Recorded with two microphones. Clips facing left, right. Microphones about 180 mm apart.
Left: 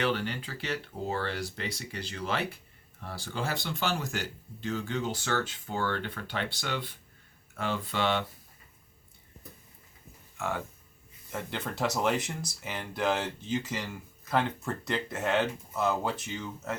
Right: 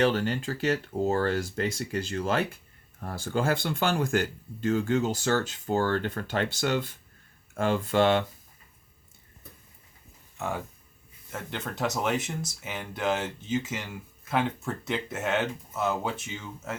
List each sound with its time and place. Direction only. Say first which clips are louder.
0.0 s speech: right 5 dB; 40° right (ahead or behind)
10.3 s speech: right 1 dB; 15° right (ahead or behind)
11.3 s speech: even; centre (ahead or behind)